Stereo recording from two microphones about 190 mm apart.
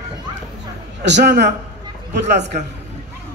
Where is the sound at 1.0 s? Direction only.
60° right (ahead or behind).